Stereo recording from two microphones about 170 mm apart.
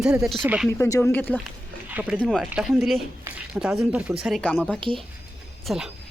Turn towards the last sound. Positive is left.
turn(degrees=0)  # may be behind; listen again after turning